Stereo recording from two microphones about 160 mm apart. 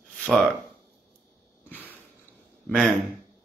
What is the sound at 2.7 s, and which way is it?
Speech, centre (ahead or behind).